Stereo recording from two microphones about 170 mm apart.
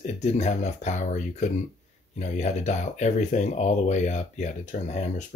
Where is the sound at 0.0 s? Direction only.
45° left (ahead or behind).